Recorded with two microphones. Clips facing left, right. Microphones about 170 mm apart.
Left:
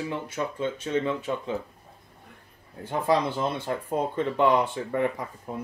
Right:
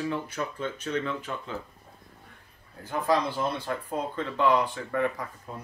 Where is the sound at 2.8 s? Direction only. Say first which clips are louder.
Left 2 dB; 25° left (ahead or behind).